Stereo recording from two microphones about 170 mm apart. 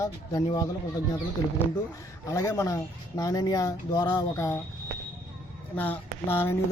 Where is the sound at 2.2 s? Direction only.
15° left (ahead or behind).